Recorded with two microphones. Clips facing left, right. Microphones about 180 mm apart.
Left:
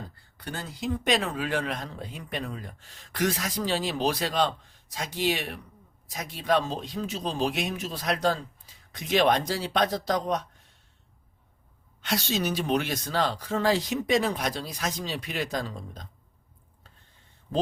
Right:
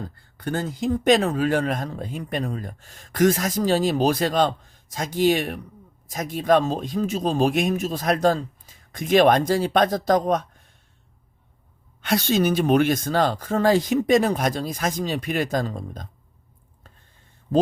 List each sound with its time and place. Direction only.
0.3 s speech: 50° right (ahead or behind)
12.0 s speech: 55° right (ahead or behind)